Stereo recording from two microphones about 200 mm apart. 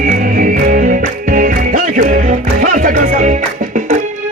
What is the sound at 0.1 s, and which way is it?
Music, 40° right (ahead or behind).